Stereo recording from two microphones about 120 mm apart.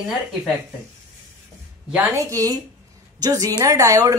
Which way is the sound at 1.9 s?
20° right (ahead or behind).